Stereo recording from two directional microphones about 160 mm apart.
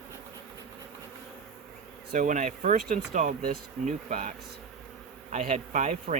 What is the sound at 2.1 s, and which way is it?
Speech, 50° right (ahead or behind).